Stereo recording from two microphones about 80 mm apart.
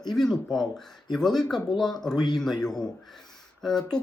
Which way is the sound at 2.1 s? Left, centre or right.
Left.